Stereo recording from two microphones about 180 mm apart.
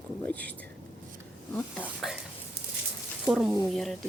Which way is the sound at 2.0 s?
Centre (ahead or behind).